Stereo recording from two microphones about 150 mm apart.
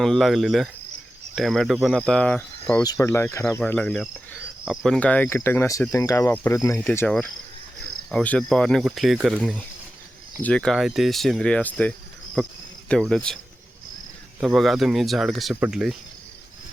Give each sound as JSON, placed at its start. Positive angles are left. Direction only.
{"t": 0.0, "sound": "speech", "side_deg": 0}
{"t": 2.8, "sound": "speech", "side_deg": 20}
{"t": 8.1, "sound": "speech", "side_deg": 5}
{"t": 14.4, "sound": "speech", "side_deg": 0}